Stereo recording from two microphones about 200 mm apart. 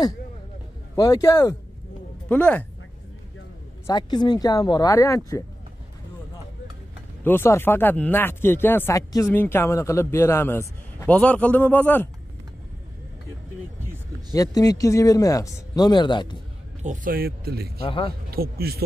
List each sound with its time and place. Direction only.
0.9 s speech: 15° left (ahead or behind)
3.8 s speech: 20° left (ahead or behind)
7.2 s speech: 10° left (ahead or behind)
14.3 s speech: 15° left (ahead or behind)
16.8 s speech: 40° right (ahead or behind)
17.8 s speech: 30° left (ahead or behind)
18.3 s speech: 50° right (ahead or behind)